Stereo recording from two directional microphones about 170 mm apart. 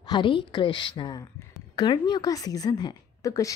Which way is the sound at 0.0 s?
25° left (ahead or behind).